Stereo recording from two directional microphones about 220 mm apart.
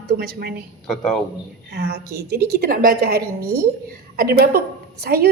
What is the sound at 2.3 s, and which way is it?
Speech, 45° right (ahead or behind).